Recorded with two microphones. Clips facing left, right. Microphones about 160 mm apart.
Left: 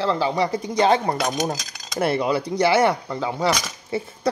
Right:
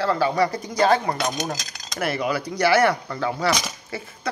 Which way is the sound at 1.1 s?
Centre (ahead or behind).